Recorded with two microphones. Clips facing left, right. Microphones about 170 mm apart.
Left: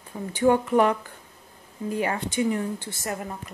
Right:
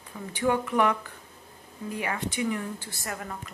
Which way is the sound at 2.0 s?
30° left (ahead or behind).